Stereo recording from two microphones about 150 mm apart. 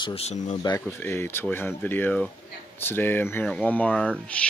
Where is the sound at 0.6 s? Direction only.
25° left (ahead or behind).